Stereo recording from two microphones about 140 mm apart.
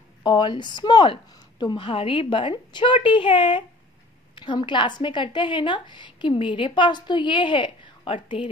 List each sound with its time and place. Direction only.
0.2 s a woman's voice: 30° left (ahead or behind)